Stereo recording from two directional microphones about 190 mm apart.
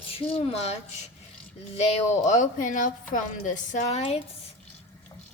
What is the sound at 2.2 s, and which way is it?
A woman's voice, 40° left (ahead or behind).